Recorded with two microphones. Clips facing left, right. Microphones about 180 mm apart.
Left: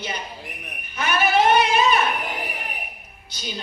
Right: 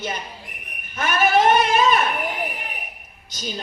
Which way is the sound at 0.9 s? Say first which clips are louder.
Right 2 dB; 45° right (ahead or behind).